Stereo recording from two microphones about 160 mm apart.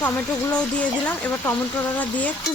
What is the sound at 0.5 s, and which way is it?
Speech, 10° left (ahead or behind).